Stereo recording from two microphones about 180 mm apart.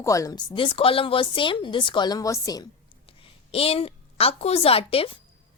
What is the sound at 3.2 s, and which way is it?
A woman's voice, 30° left (ahead or behind).